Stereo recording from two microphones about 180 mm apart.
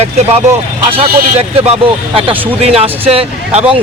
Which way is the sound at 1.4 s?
35° right (ahead or behind).